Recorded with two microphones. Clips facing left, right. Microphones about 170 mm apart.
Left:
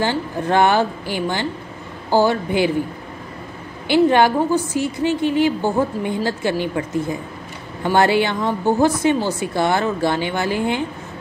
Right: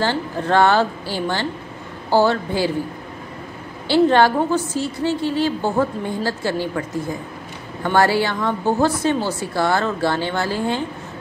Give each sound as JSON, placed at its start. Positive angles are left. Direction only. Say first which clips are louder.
{"t": 0.0, "sound": "a woman's voice", "louder": "left 1 dB", "side_deg": 15}
{"t": 3.8, "sound": "a woman's voice", "louder": "even", "side_deg": 15}